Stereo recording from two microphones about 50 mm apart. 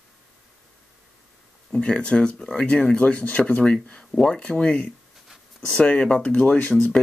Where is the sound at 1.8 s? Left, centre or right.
Centre.